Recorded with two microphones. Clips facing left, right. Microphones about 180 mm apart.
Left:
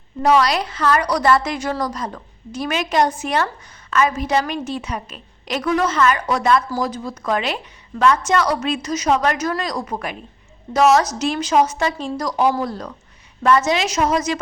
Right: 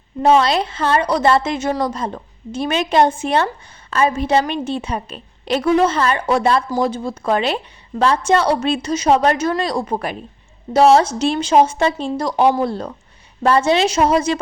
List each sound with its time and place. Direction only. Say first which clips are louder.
0.2 s a woman's voice: right 2 dB; 25° right (ahead or behind)